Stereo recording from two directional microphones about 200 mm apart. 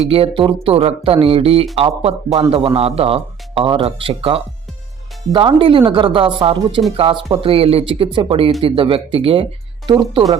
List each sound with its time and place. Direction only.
0.1 s speech: 25° right (ahead or behind)